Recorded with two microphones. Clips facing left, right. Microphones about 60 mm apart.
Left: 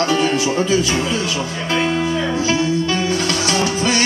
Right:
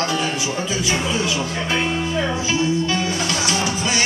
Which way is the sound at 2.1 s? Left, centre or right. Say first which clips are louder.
Left 3 dB; right.